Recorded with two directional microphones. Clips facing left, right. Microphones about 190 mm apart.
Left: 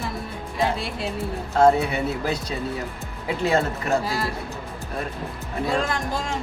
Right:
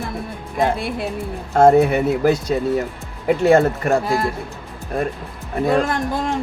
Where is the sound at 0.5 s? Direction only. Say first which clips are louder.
Right 5 dB; 55° right (ahead or behind).